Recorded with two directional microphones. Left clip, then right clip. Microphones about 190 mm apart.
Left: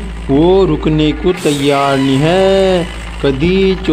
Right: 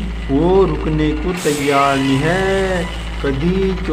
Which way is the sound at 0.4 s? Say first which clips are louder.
Left 4 dB; 35° left (ahead or behind).